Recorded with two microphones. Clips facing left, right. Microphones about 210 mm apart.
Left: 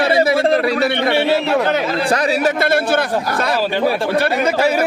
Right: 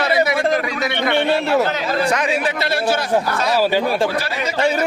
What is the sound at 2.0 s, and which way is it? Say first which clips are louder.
Speech: left 5 dB; 35° left (ahead or behind).